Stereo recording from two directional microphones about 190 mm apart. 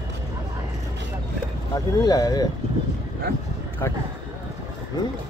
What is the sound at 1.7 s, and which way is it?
Speech, 20° left (ahead or behind).